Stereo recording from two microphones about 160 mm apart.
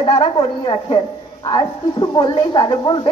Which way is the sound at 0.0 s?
35° left (ahead or behind).